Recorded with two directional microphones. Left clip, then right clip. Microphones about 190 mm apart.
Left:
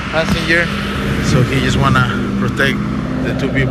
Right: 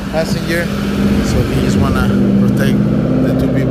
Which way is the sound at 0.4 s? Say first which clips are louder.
Left 4 dB; 5° right (ahead or behind).